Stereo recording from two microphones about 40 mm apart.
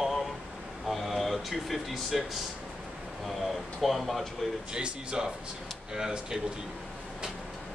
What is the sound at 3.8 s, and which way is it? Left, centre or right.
Speech, centre.